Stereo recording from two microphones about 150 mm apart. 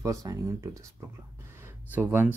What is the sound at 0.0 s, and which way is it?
Speech, 25° right (ahead or behind).